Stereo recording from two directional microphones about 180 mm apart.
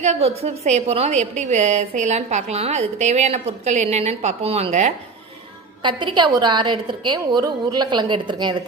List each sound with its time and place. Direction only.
0.0 s a woman's voice: 35° right (ahead or behind)
5.8 s a woman's voice: 25° right (ahead or behind)